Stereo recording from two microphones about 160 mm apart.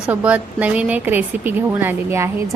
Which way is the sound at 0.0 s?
10° right (ahead or behind).